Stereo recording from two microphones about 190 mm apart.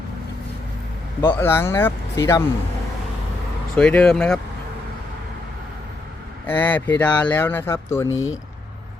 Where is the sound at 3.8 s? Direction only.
5° left (ahead or behind).